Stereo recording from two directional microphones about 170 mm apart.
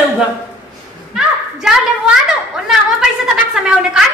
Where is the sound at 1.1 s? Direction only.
5° right (ahead or behind).